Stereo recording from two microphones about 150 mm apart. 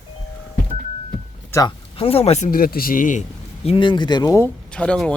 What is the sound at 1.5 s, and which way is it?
Speech, 15° left (ahead or behind).